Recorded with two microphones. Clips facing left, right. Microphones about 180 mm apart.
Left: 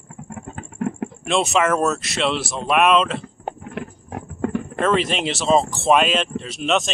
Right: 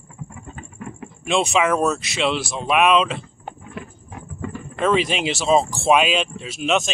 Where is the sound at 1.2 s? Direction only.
Centre (ahead or behind).